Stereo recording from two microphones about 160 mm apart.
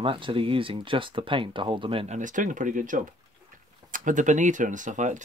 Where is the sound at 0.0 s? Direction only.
35° right (ahead or behind).